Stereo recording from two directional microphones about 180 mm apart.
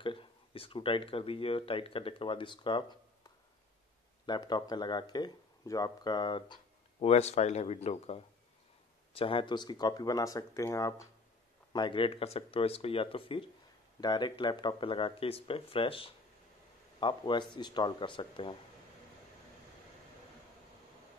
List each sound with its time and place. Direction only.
0.0 s speech: 30° left (ahead or behind)